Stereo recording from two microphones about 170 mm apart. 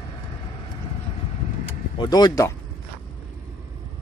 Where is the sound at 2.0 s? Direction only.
25° left (ahead or behind).